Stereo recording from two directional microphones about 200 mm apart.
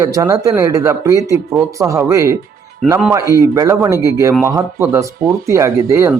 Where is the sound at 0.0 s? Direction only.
15° right (ahead or behind).